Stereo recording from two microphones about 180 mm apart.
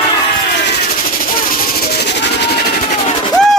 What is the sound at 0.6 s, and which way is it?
Music, 55° left (ahead or behind).